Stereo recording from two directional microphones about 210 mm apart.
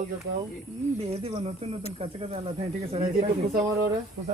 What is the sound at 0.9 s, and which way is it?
Speech, 30° right (ahead or behind).